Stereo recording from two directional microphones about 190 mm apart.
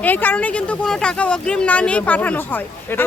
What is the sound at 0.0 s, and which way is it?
Speech, 10° left (ahead or behind).